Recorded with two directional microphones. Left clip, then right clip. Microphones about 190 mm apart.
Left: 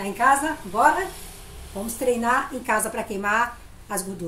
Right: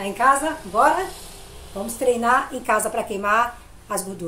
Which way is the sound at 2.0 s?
20° left (ahead or behind).